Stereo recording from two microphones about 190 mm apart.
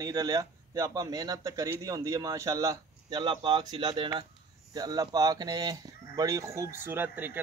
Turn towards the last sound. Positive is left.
turn(degrees=-10)  # may be behind; listen again after turning